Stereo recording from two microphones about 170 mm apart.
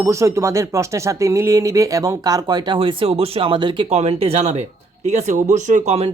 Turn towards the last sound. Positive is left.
turn(degrees=-40)  # may be behind; listen again after turning